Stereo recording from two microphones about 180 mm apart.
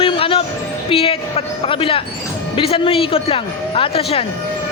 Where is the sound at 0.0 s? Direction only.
30° left (ahead or behind).